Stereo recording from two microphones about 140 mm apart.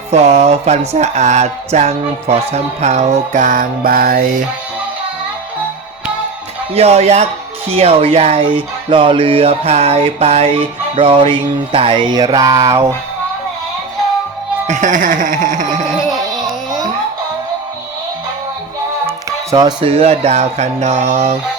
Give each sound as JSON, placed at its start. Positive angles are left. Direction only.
{"t": 0.1, "sound": "music", "side_deg": -50}
{"t": 6.7, "sound": "speech", "side_deg": -50}
{"t": 14.7, "sound": "music", "side_deg": -65}
{"t": 19.5, "sound": "speech", "side_deg": -25}
{"t": 19.8, "sound": "speech", "side_deg": -45}